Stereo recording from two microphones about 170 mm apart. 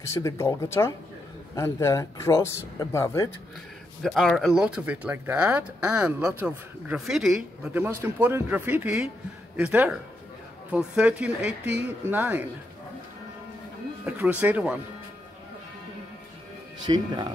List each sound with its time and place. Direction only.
0.0 s speech: 15° left (ahead or behind)
4.0 s speech: centre (ahead or behind)
14.0 s speech: 10° right (ahead or behind)
16.8 s speech: 25° right (ahead or behind)